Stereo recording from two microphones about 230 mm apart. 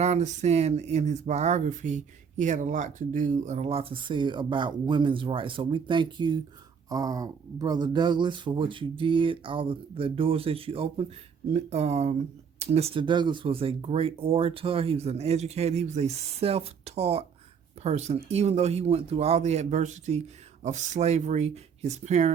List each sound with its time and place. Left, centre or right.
0.0 s speech: right